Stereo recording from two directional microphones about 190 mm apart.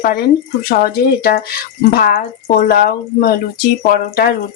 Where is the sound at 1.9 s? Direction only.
50° left (ahead or behind).